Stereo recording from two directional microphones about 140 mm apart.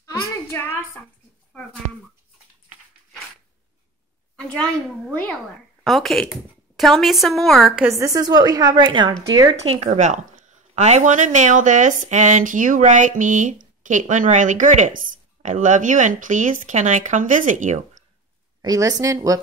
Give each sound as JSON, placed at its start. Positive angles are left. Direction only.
{"t": 0.5, "sound": "a woman's voice", "side_deg": 15}
{"t": 4.4, "sound": "a woman's voice", "side_deg": 5}
{"t": 7.9, "sound": "a woman's voice", "side_deg": -20}
{"t": 9.8, "sound": "speech", "side_deg": -60}
{"t": 18.6, "sound": "a woman's voice", "side_deg": -25}